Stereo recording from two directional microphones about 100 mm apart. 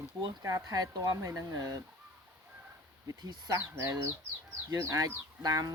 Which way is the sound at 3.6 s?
25° right (ahead or behind).